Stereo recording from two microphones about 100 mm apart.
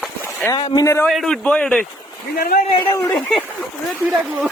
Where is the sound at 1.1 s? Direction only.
Centre (ahead or behind).